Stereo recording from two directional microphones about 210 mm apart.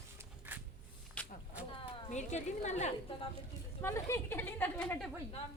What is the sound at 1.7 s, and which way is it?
A woman's voice, 35° left (ahead or behind).